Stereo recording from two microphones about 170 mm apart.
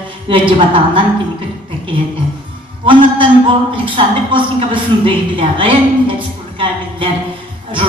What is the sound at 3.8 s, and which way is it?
A woman's voice, 30° right (ahead or behind).